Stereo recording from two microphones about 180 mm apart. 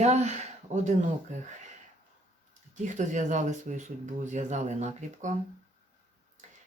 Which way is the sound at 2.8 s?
40° right (ahead or behind).